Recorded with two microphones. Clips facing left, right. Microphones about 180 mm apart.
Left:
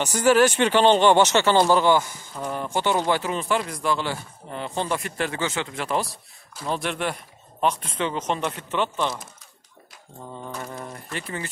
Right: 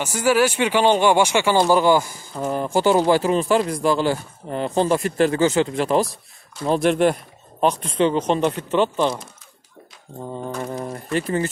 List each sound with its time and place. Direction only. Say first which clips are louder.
0.0 s speech: even; 10° right (ahead or behind)
2.8 s speech: right 7 dB; 35° right (ahead or behind)
10.2 s speech: right 7 dB; 25° right (ahead or behind)